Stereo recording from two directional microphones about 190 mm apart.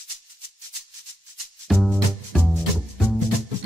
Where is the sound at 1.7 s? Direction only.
Centre (ahead or behind).